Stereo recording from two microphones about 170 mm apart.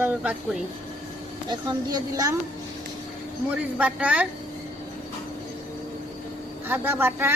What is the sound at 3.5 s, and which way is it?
Speech, 10° right (ahead or behind).